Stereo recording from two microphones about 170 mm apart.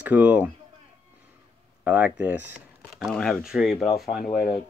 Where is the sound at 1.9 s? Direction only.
10° right (ahead or behind).